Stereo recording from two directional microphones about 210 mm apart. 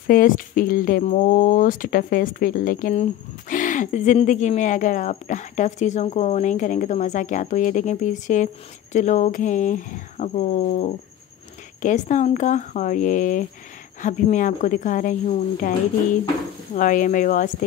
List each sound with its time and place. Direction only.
0.0 s speech: 40° left (ahead or behind)